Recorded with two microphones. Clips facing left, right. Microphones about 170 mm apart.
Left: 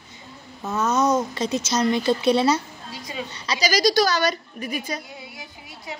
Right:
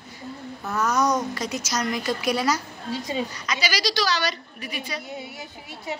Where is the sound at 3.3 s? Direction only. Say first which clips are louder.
Left 4 dB; 35° left (ahead or behind).